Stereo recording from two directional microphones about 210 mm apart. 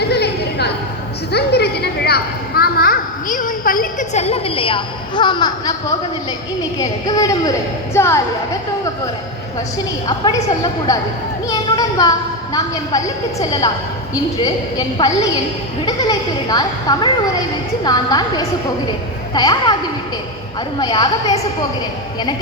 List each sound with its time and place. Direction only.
0.0 s a sound: 50° left (ahead or behind)
1.3 s a child's voice: 50° left (ahead or behind); by 5.7 s 20° left (ahead or behind)
6.7 s a woman's voice: 15° left (ahead or behind)
10.1 s a woman's voice: 20° left (ahead or behind)
11.4 s a sound: 15° left (ahead or behind)
12.5 s a woman's voice: 15° left (ahead or behind)
20.7 s speech: 20° left (ahead or behind)